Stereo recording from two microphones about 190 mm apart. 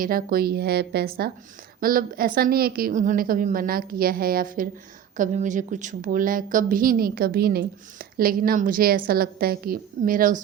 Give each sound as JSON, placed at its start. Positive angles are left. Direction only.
{"t": 0.0, "sound": "a woman's voice", "side_deg": -50}